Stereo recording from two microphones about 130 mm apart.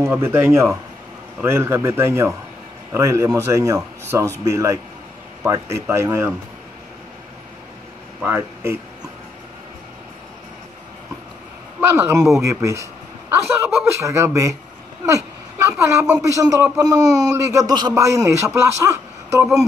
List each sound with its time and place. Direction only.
0.0 s speech: 20° right (ahead or behind)
8.2 s speech: 15° right (ahead or behind)
11.8 s speech: 20° right (ahead or behind)
15.0 s a sound: 25° right (ahead or behind)
15.8 s speech: 20° right (ahead or behind)